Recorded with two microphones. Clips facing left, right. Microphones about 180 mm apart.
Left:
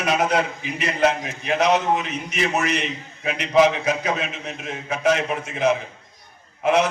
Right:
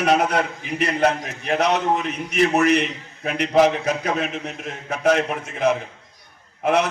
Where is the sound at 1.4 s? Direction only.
55° right (ahead or behind).